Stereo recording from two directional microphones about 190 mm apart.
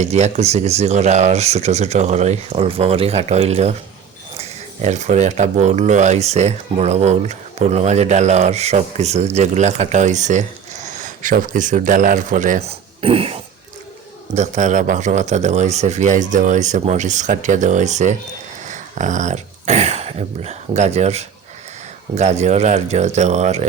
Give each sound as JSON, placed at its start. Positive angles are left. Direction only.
{"t": 0.0, "sound": "speech", "side_deg": -35}